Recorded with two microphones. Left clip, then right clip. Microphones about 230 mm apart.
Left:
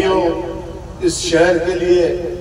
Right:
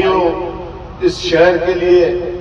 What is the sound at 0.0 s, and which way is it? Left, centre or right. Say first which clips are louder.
Music: right 2 dB; left.